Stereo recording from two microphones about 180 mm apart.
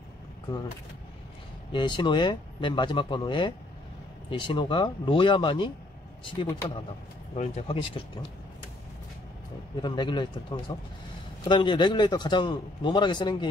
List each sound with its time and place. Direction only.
1.7 s a man's voice: 25° left (ahead or behind)
9.8 s a man's voice: 25° left (ahead or behind)